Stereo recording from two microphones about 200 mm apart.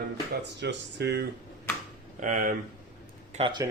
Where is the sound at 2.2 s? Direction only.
40° right (ahead or behind).